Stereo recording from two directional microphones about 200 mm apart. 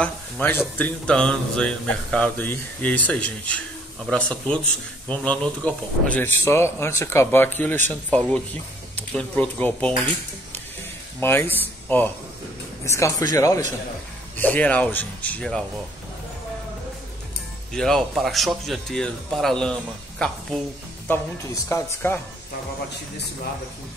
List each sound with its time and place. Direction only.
0.0 s a man's voice: 10° left (ahead or behind)
11.1 s speech: 10° left (ahead or behind)
17.7 s a man's voice: centre (ahead or behind)